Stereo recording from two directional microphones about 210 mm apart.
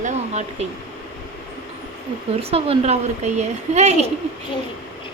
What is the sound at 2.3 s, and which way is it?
Speech, 30° right (ahead or behind).